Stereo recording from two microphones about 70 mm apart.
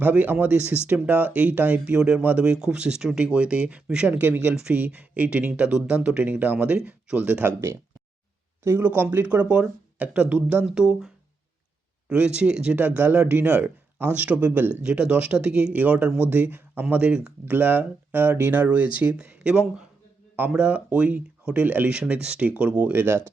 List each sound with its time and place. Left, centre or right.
0.0 s speech: right
8.6 s speech: right; by 11.1 s centre
12.1 s speech: centre
12.8 s speech: right
14.8 s speech: centre
16.9 s speech: centre
17.4 s speech: right